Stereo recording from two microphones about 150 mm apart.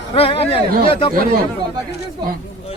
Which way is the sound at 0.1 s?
40° left (ahead or behind).